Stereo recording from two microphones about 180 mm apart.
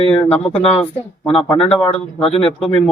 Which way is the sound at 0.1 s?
5° left (ahead or behind).